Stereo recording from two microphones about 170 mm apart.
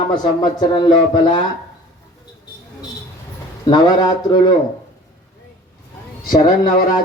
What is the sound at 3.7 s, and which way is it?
Speech, 25° left (ahead or behind).